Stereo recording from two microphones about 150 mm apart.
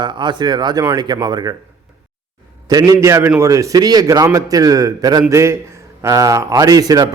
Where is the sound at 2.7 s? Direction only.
25° right (ahead or behind).